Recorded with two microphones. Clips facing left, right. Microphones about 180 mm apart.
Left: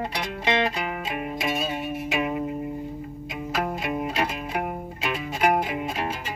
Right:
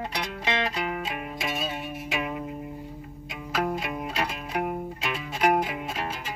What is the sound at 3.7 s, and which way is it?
Music, 5° left (ahead or behind).